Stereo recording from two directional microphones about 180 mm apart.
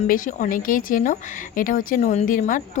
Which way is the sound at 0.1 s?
45° left (ahead or behind).